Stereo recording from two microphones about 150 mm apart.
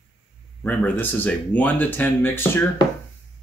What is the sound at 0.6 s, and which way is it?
Speech, 10° left (ahead or behind).